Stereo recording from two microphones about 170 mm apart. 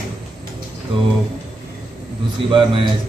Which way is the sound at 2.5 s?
30° right (ahead or behind).